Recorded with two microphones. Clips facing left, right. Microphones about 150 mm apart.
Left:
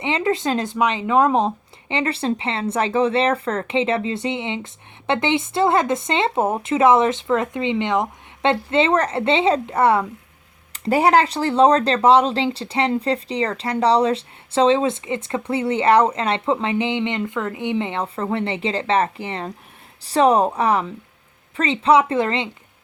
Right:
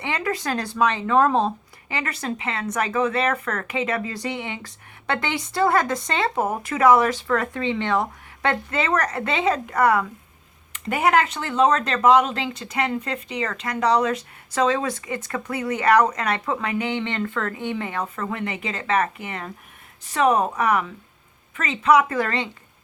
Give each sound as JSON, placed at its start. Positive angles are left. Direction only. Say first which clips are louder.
{"t": 0.0, "sound": "speech", "louder": "left 5 dB", "side_deg": 25}